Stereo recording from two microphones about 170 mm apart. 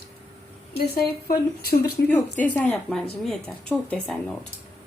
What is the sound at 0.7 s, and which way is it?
Speech, 65° left (ahead or behind).